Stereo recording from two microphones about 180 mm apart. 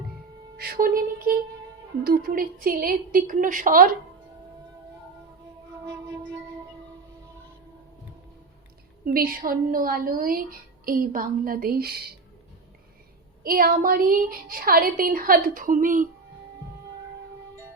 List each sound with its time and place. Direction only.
0.5 s a woman's voice: 60° right (ahead or behind)
5.8 s music: 15° right (ahead or behind)
9.0 s a woman's voice: 55° right (ahead or behind)
13.4 s a woman's voice: 55° right (ahead or behind)